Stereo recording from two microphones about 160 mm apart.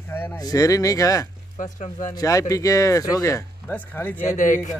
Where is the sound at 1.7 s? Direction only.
50° left (ahead or behind).